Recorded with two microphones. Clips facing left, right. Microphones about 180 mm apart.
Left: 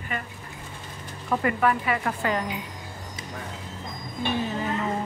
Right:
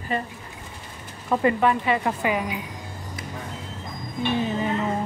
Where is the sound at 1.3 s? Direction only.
20° right (ahead or behind).